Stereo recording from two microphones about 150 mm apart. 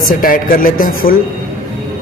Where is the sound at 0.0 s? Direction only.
65° left (ahead or behind).